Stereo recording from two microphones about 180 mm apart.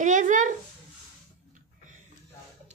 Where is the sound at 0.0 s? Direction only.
45° right (ahead or behind).